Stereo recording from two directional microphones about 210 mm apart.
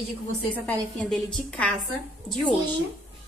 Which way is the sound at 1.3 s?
5° left (ahead or behind).